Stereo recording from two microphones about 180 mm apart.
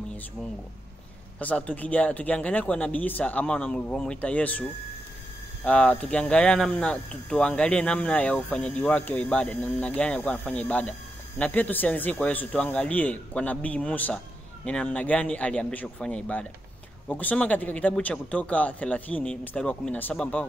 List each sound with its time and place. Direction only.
1.4 s speech: 10° left (ahead or behind)
5.7 s speech: 5° left (ahead or behind)